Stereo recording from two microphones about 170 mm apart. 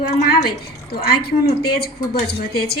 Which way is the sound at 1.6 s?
65° left (ahead or behind).